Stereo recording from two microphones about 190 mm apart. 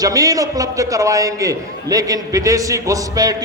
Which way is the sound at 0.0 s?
20° right (ahead or behind).